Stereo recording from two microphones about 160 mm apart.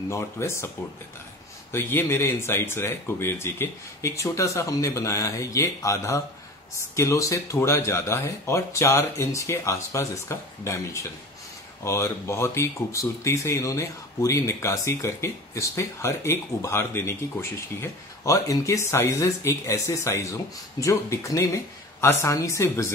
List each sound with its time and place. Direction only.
0.1 s speech: 15° left (ahead or behind)
1.7 s speech: 15° left (ahead or behind)